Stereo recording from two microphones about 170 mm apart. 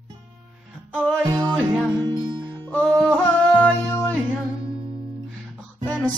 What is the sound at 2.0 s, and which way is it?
Music, 25° right (ahead or behind).